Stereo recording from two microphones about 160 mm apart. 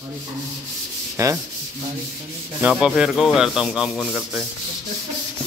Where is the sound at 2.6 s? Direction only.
5° right (ahead or behind).